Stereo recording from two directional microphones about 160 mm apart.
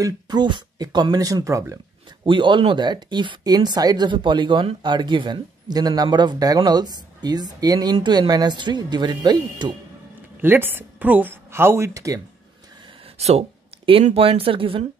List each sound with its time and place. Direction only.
0.0 s speech: 25° right (ahead or behind)
2.2 s speech: 30° right (ahead or behind)
10.4 s a woman's voice: 15° right (ahead or behind)
13.0 s speech: 40° right (ahead or behind)